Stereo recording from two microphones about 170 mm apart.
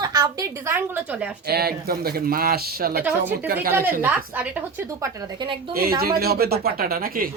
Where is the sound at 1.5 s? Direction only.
65° right (ahead or behind).